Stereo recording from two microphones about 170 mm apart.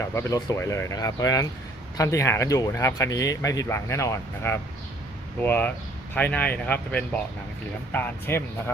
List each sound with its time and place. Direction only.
0.0 s speech: 15° left (ahead or behind)